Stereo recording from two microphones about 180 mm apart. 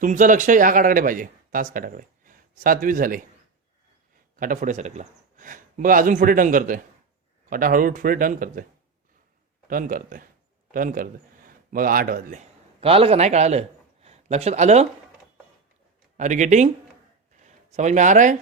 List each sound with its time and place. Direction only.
0.0 s speech: 45° right (ahead or behind)
4.4 s a man's voice: 45° right (ahead or behind)
9.6 s a man's voice: 50° right (ahead or behind)
12.8 s a man's voice: 30° right (ahead or behind)
16.1 s speech: 40° right (ahead or behind)